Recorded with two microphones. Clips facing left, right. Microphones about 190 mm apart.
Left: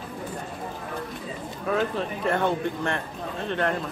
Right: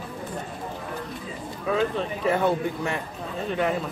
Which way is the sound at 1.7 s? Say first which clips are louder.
Right 1 dB; centre (ahead or behind).